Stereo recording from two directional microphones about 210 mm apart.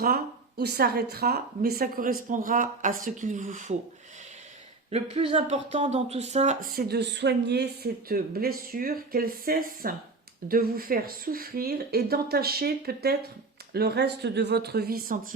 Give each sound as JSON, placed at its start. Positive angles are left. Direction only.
{"t": 0.6, "sound": "speech", "side_deg": -50}
{"t": 4.9, "sound": "speech", "side_deg": -30}